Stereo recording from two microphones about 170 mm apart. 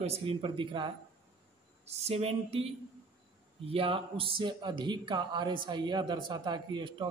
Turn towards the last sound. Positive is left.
turn(degrees=-25)  # may be behind; listen again after turning